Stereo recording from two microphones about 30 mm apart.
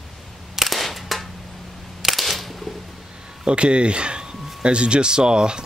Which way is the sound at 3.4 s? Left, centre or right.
Right.